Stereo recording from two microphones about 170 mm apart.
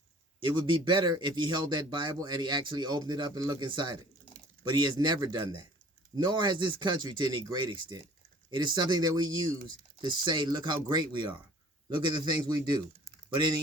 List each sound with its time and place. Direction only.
0.4 s speech: 25° right (ahead or behind)